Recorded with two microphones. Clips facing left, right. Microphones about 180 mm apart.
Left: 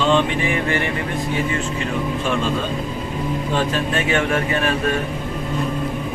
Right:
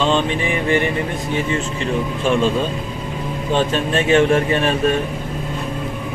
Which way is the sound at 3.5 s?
25° right (ahead or behind).